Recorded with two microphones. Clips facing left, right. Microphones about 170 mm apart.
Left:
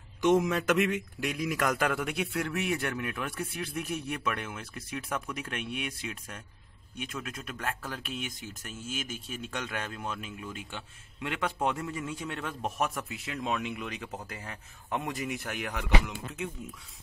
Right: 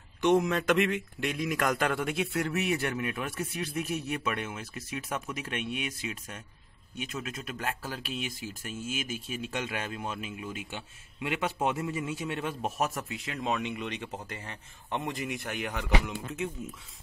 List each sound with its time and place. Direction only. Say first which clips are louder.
0.2 s a man's voice: even; 5° left (ahead or behind)
12.7 s a man's voice: left 1 dB; 30° right (ahead or behind)
13.1 s a man's voice: right 1 dB; centre (ahead or behind)